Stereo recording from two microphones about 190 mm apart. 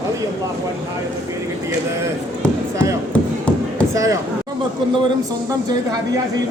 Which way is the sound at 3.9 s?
15° right (ahead or behind).